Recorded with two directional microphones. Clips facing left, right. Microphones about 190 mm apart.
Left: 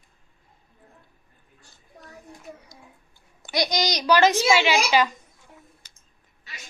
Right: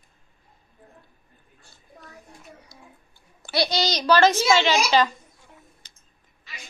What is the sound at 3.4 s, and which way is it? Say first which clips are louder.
A woman's voice: right 1 dB; 15° left (ahead or behind).